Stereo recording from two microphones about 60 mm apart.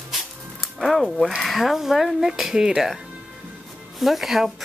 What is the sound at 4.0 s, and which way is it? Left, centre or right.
Speech, centre.